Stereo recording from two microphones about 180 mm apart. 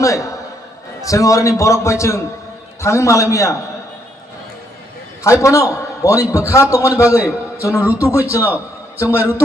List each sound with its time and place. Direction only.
1.0 s a man's voice: 20° left (ahead or behind)
5.2 s a man's voice: 15° left (ahead or behind)